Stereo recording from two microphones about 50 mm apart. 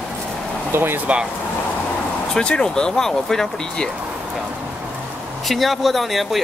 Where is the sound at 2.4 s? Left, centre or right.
Centre.